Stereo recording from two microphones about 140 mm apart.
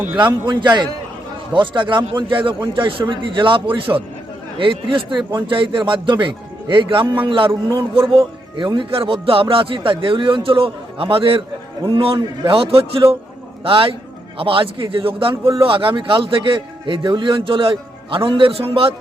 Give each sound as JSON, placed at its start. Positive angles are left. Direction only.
{"t": 0.4, "sound": "speech", "side_deg": -30}